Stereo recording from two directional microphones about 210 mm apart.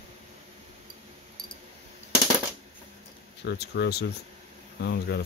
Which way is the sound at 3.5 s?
50° left (ahead or behind).